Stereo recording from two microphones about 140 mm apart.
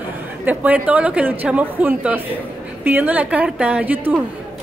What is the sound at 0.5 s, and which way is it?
A woman's voice, 10° right (ahead or behind).